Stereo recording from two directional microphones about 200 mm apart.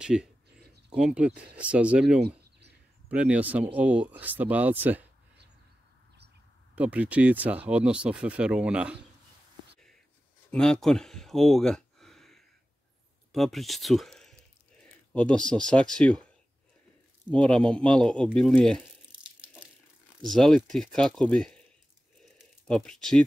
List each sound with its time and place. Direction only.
0.0 s speech: 5° right (ahead or behind)
6.7 s speech: 5° right (ahead or behind)
10.5 s a sound: centre (ahead or behind)
13.3 s speech: centre (ahead or behind)
17.3 s speech: centre (ahead or behind)
20.2 s speech: centre (ahead or behind)
22.7 s speech: 5° left (ahead or behind)